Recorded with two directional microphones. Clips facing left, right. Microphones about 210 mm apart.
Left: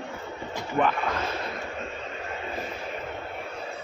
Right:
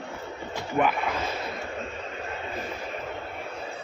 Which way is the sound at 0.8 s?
10° right (ahead or behind).